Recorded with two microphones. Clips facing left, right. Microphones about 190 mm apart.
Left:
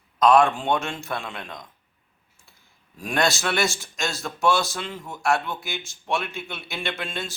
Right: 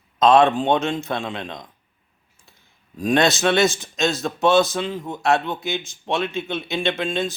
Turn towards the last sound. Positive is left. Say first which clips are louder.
# right 8 dB
turn(degrees=-20)  # may be behind; listen again after turning